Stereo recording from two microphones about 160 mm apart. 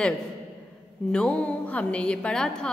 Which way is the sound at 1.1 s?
5° left (ahead or behind).